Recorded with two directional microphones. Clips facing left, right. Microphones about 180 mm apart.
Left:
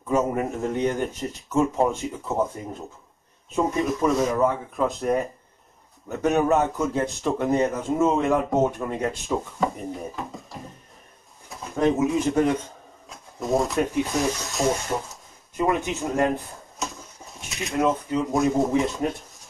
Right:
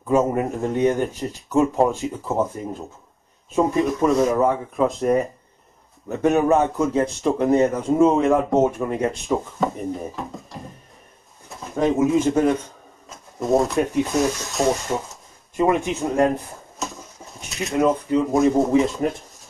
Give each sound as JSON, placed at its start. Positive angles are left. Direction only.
{"t": 0.1, "sound": "a man's voice", "side_deg": 0}
{"t": 15.7, "sound": "a man's voice", "side_deg": 0}